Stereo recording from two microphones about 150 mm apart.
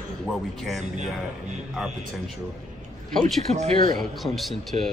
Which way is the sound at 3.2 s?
50° right (ahead or behind).